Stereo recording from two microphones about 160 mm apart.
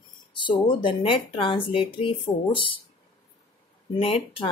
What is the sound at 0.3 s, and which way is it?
Speech, 30° left (ahead or behind).